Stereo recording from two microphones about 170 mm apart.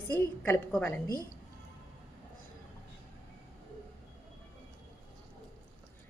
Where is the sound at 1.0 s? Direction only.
20° right (ahead or behind).